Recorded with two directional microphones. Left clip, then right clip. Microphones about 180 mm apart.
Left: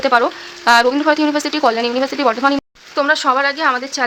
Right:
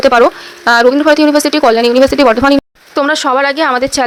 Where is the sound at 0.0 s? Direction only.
40° right (ahead or behind).